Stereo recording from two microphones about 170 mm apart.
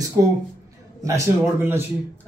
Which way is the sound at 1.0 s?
20° right (ahead or behind).